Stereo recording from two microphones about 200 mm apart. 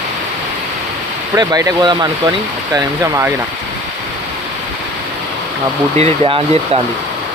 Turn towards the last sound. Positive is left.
turn(degrees=-30)  # may be behind; listen again after turning